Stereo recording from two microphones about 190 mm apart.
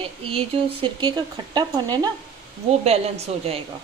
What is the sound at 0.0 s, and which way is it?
Speech, 30° right (ahead or behind).